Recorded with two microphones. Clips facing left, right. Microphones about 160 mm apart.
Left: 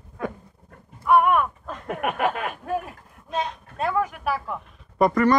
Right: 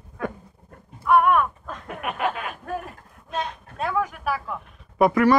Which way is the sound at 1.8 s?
50° left (ahead or behind).